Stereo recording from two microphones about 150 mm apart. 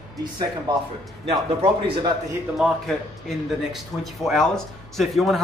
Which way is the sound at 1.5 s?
40° right (ahead or behind).